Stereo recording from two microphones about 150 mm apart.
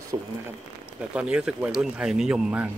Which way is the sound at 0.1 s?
25° right (ahead or behind).